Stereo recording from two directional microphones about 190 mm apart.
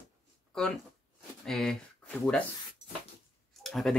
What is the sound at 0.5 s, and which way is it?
Speech, 5° left (ahead or behind).